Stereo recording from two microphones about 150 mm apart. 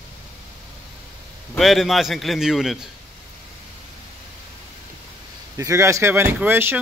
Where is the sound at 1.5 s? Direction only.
Centre (ahead or behind).